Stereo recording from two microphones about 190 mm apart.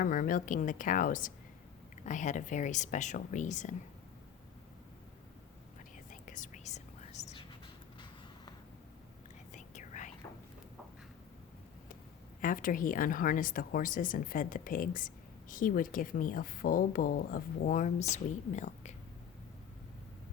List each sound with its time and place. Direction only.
0.0 s a woman's voice: 45° left (ahead or behind)
6.1 s whispering: 45° left (ahead or behind)
9.5 s whispering: 40° left (ahead or behind)
12.4 s speech: 45° left (ahead or behind)